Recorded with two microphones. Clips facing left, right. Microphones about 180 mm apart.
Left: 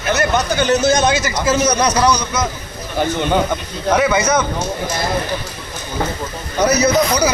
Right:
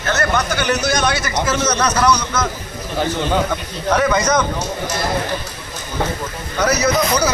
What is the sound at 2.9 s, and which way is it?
A man's voice, centre (ahead or behind).